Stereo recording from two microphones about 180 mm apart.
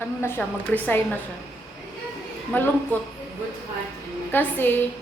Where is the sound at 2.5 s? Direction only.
10° left (ahead or behind).